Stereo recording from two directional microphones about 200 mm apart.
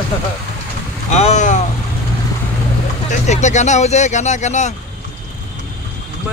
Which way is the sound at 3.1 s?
35° left (ahead or behind).